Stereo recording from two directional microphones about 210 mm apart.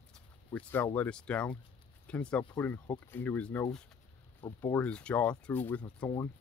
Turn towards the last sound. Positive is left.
turn(degrees=10)  # may be behind; listen again after turning